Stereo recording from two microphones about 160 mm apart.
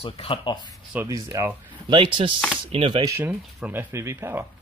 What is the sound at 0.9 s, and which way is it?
Speech, 15° right (ahead or behind).